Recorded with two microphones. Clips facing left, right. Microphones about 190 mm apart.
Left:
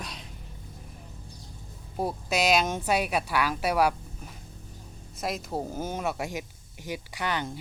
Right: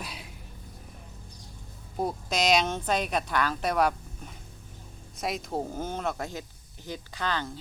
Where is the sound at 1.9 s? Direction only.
5° left (ahead or behind).